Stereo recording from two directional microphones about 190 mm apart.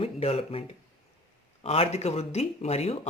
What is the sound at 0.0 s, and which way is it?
Speech, 30° left (ahead or behind).